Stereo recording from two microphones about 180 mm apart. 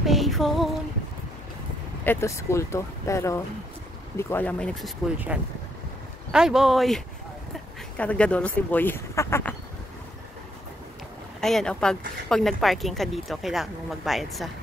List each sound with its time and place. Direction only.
0.0 s female singing: centre (ahead or behind)
2.0 s speech: 15° left (ahead or behind)
6.3 s a woman's voice: 5° right (ahead or behind)
8.0 s speech: 5° left (ahead or behind)
11.4 s a woman's voice: 5° left (ahead or behind)